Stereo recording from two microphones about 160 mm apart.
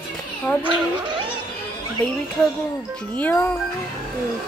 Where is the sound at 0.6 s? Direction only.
30° right (ahead or behind).